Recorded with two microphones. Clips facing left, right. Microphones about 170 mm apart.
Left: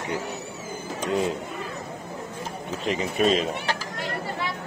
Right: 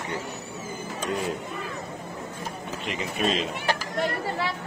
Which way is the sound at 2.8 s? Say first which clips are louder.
Left 5 dB; 35° left (ahead or behind).